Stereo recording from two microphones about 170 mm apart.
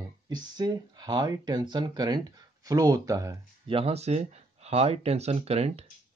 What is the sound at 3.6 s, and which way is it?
Speech, 35° right (ahead or behind).